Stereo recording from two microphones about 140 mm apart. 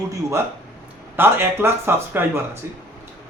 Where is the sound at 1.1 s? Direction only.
15° right (ahead or behind).